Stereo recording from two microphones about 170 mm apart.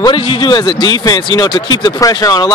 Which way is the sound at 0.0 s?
30° left (ahead or behind).